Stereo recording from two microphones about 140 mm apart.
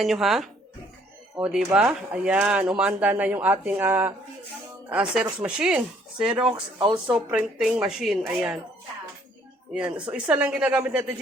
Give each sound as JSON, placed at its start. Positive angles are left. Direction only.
{"t": 0.0, "sound": "speech", "side_deg": 0}
{"t": 9.7, "sound": "speech", "side_deg": -5}